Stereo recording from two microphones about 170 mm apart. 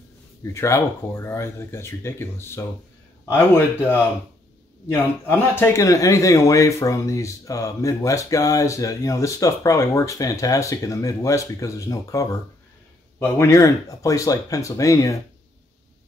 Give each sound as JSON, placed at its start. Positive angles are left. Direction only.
{"t": 0.5, "sound": "speech", "side_deg": 15}
{"t": 4.9, "sound": "speech", "side_deg": 10}